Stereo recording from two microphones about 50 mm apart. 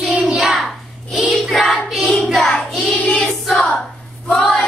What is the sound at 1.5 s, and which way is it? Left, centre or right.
Child singing, centre.